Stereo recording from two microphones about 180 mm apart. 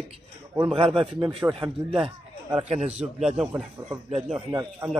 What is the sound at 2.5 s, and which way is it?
Speech, 35° right (ahead or behind).